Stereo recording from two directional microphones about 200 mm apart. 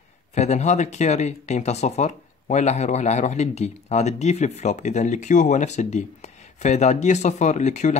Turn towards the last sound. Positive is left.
turn(degrees=35)  # may be behind; listen again after turning